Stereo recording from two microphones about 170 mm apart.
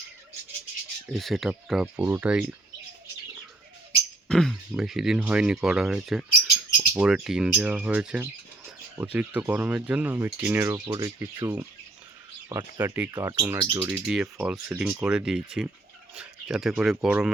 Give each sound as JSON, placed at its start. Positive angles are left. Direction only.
{"t": 1.1, "sound": "speech", "side_deg": 0}
{"t": 4.3, "sound": "speech", "side_deg": 0}
{"t": 10.8, "sound": "speech", "side_deg": -25}
{"t": 11.2, "sound": "speech", "side_deg": -15}
{"t": 13.9, "sound": "speech", "side_deg": -5}